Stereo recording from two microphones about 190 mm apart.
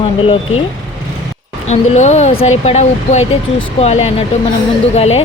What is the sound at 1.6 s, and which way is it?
Speech, 35° left (ahead or behind).